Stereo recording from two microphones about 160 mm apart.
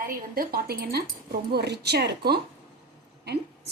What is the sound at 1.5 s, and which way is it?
A woman's voice, 90° right.